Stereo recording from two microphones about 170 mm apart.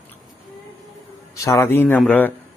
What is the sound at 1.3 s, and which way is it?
Speech, 15° left (ahead or behind).